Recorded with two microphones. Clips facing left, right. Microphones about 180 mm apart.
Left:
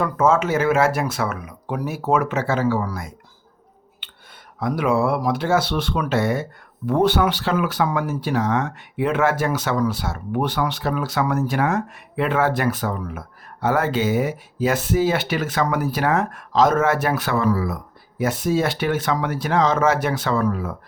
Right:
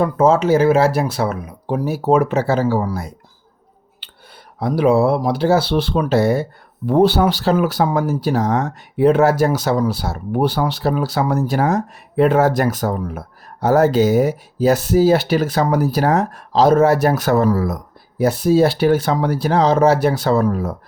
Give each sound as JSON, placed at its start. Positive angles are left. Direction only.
{"t": 0.0, "sound": "speech", "side_deg": -30}
{"t": 4.0, "sound": "a sound", "side_deg": -35}
{"t": 4.6, "sound": "speech", "side_deg": -30}